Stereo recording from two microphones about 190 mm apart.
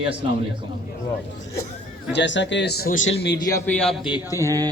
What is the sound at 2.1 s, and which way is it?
Speech, 70° left (ahead or behind).